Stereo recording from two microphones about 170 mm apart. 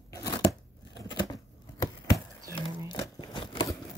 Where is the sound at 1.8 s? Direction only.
20° left (ahead or behind).